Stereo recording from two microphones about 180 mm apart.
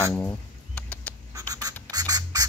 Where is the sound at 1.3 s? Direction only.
20° right (ahead or behind).